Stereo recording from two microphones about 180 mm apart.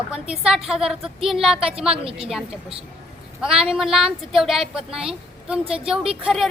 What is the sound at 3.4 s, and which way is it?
A woman's voice, 5° right (ahead or behind).